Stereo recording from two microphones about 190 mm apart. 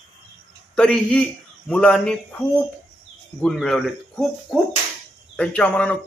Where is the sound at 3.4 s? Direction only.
Centre (ahead or behind).